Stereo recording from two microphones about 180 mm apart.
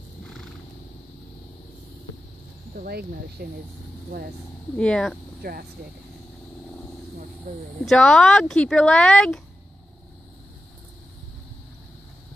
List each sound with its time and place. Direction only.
0.2 s wild animals: centre (ahead or behind)
2.8 s speech: 60° right (ahead or behind)
4.7 s speech: 5° left (ahead or behind)
5.4 s speech: 55° right (ahead or behind)
7.8 s speech: 5° left (ahead or behind)